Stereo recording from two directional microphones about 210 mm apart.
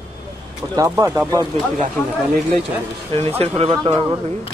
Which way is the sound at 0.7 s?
10° right (ahead or behind).